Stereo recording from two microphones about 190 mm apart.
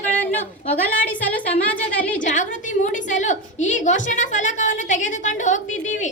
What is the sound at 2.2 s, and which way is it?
A woman's voice, 40° left (ahead or behind).